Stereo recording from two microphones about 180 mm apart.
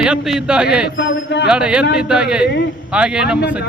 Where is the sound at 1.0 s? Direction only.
75° left (ahead or behind).